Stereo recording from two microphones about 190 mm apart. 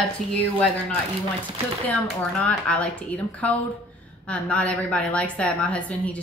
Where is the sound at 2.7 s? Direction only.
5° left (ahead or behind).